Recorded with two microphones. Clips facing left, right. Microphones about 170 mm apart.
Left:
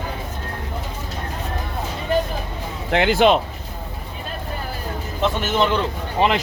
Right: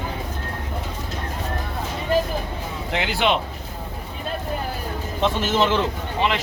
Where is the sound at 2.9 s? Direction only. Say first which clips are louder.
Left 7 dB; 55° left (ahead or behind).